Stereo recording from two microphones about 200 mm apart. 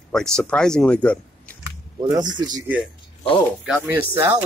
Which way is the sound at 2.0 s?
20° right (ahead or behind).